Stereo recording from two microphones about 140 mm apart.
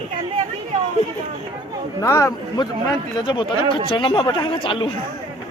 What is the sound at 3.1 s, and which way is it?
Speech, 35° left (ahead or behind).